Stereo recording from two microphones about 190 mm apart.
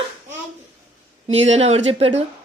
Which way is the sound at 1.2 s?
35° right (ahead or behind).